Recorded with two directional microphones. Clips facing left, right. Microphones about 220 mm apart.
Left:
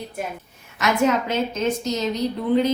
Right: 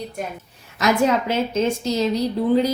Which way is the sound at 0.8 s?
30° right (ahead or behind).